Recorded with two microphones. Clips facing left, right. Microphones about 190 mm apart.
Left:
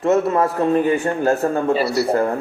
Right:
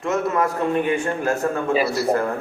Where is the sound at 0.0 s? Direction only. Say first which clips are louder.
Left 5 dB; 30° left (ahead or behind).